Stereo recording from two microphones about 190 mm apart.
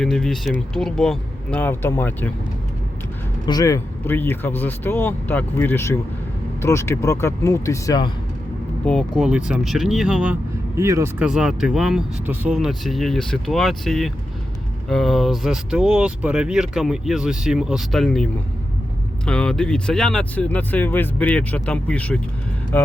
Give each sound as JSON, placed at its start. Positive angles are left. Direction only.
{"t": 0.0, "sound": "speech", "side_deg": 5}
{"t": 3.4, "sound": "speech", "side_deg": 20}
{"t": 8.8, "sound": "speech", "side_deg": 5}
{"t": 10.8, "sound": "speech", "side_deg": -15}
{"t": 11.2, "sound": "speech", "side_deg": -5}